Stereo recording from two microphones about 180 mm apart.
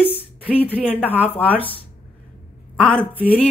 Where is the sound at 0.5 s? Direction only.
10° left (ahead or behind).